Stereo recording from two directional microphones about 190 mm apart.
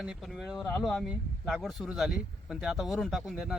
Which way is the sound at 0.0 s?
Centre (ahead or behind).